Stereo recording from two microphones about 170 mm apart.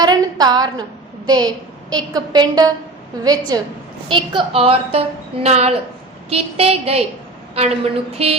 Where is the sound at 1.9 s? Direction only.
25° right (ahead or behind).